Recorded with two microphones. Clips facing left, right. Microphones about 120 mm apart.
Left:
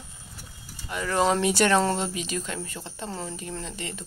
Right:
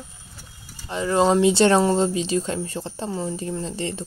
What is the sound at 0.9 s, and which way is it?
Speech, 25° right (ahead or behind).